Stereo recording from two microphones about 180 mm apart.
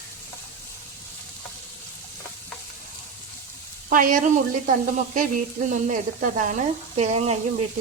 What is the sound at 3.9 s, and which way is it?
Sizzle, 50° right (ahead or behind).